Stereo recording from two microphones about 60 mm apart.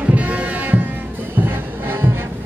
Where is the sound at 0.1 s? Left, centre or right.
Right.